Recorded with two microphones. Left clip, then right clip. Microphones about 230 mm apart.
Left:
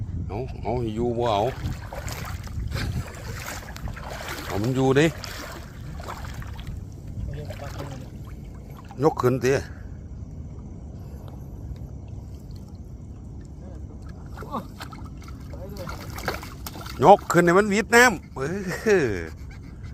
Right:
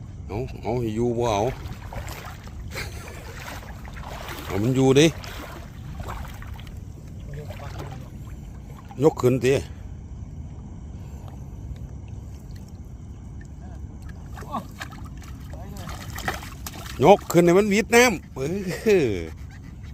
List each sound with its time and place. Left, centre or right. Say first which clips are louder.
0.3 s speech: right 1 dB; right
1.5 s boat: even; left
4.5 s speech: right 3 dB; right
5.1 s boat: left 1 dB; left
7.4 s boat: left 2 dB; left
9.0 s speech: right 2 dB; right
15.9 s rowboat: right 1 dB; centre
17.2 s speech: right 1 dB; centre